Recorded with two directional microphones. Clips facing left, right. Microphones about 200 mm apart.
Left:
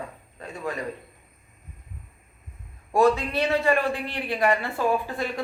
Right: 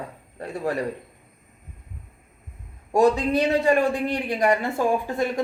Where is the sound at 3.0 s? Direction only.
20° right (ahead or behind).